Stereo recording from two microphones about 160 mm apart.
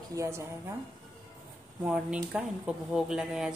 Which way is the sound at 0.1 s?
15° right (ahead or behind).